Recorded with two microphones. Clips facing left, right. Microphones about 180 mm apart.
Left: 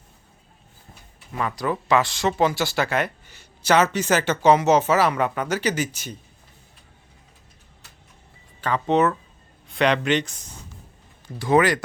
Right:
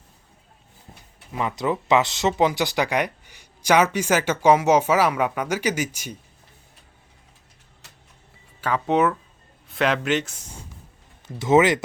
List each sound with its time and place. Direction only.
1.3 s speech: 20° right (ahead or behind)
8.6 s speech: 10° right (ahead or behind)
11.3 s speech: 20° right (ahead or behind)